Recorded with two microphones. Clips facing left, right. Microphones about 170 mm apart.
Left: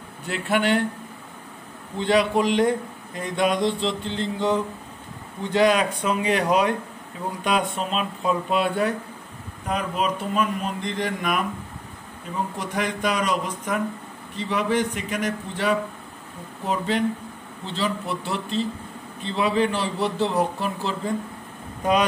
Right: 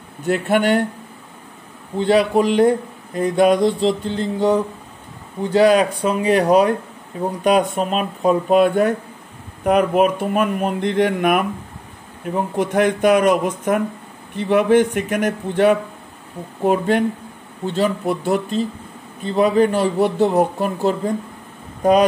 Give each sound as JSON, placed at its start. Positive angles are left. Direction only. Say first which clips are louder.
{"t": 0.3, "sound": "a man's voice", "louder": "right 6 dB", "side_deg": -45}
{"t": 2.0, "sound": "mantra", "louder": "right 5 dB", "side_deg": -35}
{"t": 7.4, "sound": "a man's voice", "louder": "right 8 dB", "side_deg": -45}
{"t": 9.7, "sound": "a man's voice", "louder": "right 10 dB", "side_deg": -60}